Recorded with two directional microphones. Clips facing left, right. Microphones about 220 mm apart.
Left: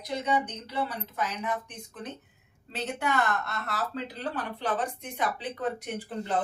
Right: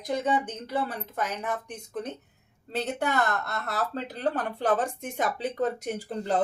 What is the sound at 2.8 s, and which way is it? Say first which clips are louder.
Speech: right 1 dB; 40° right (ahead or behind).